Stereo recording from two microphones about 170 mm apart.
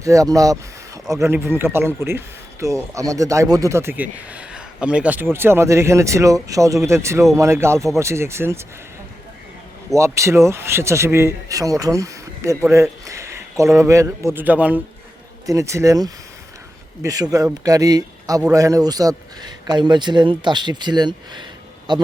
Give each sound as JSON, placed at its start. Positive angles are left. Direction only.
{"t": 0.0, "sound": "speech", "side_deg": -20}
{"t": 9.9, "sound": "speech", "side_deg": -15}